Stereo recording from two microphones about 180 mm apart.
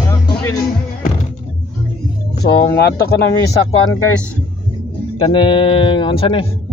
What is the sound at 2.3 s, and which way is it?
Speech, 65° left (ahead or behind).